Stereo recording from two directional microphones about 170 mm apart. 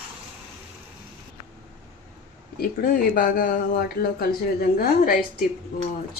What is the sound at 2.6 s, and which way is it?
Speech, 55° left (ahead or behind).